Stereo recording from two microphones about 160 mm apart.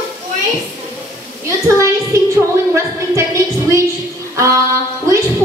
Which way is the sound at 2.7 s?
20° right (ahead or behind).